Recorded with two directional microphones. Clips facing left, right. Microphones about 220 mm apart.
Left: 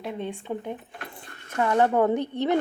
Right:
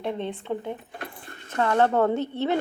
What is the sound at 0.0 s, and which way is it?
A woman's voice, 10° left (ahead or behind).